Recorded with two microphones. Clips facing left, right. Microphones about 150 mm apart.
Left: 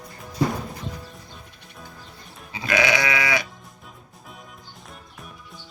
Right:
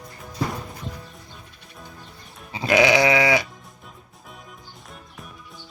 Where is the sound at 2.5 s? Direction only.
25° right (ahead or behind).